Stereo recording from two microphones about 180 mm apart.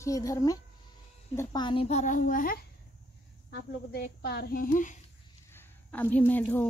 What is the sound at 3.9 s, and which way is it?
A woman's voice, 65° left (ahead or behind).